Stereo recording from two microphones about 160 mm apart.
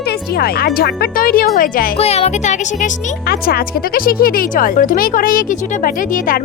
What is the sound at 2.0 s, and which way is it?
Speech, 40° left (ahead or behind).